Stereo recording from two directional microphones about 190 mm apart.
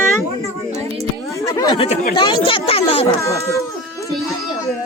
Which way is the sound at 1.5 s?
25° left (ahead or behind).